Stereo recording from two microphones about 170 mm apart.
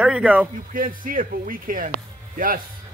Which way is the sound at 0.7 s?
55° right (ahead or behind).